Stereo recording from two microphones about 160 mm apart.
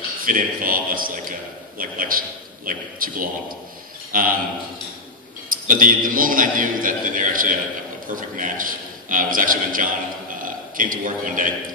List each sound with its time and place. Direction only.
0.2 s a man's voice: 60° right (ahead or behind)
5.5 s a man's voice: 60° right (ahead or behind)